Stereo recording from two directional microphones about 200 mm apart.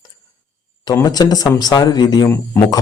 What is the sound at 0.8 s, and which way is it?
A man's voice, 20° left (ahead or behind).